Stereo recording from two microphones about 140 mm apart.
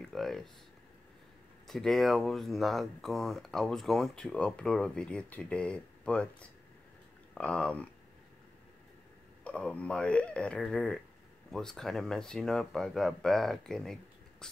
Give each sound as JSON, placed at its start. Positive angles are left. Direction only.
{"t": 0.0, "sound": "speech", "side_deg": 0}
{"t": 1.7, "sound": "speech", "side_deg": 0}
{"t": 9.4, "sound": "speech", "side_deg": 10}